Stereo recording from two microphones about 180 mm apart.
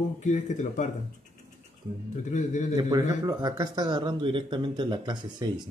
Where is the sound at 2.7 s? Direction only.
20° right (ahead or behind).